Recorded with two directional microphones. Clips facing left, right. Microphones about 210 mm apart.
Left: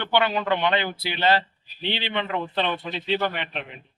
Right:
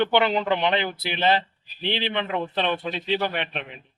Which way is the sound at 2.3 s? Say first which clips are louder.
Even; 15° right (ahead or behind).